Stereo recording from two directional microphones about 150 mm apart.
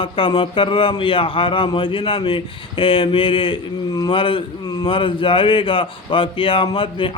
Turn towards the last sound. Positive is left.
turn(degrees=35)  # may be behind; listen again after turning